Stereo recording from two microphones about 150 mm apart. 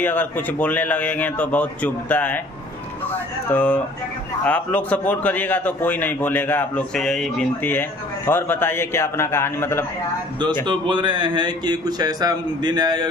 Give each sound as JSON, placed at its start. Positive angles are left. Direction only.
{"t": 0.0, "sound": "a man's voice", "side_deg": 10}
{"t": 3.4, "sound": "a man's voice", "side_deg": 10}
{"t": 10.7, "sound": "speech", "side_deg": -30}